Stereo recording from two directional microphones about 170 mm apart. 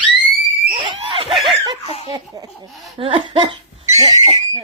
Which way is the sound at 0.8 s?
30° right (ahead or behind).